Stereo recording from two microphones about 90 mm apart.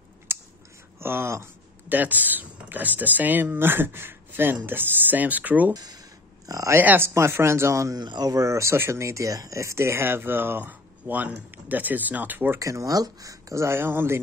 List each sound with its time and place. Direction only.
0.3 s scissors: 25° right (ahead or behind)
0.9 s speech: 25° right (ahead or behind)
5.7 s a sound: 45° right (ahead or behind)
6.8 s speech: 20° right (ahead or behind)
7.9 s speech: 50° right (ahead or behind); by 12.5 s 20° right (ahead or behind)
12.5 s speech: 35° right (ahead or behind)